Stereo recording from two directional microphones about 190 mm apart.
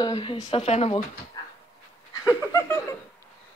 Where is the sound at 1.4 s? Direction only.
20° left (ahead or behind).